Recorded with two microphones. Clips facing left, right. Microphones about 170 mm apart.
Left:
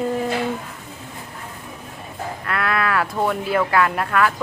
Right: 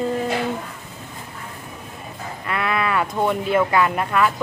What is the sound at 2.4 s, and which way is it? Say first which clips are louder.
Speech: even; centre (ahead or behind).